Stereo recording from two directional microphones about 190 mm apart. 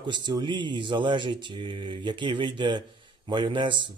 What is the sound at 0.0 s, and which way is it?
Speech, 25° right (ahead or behind).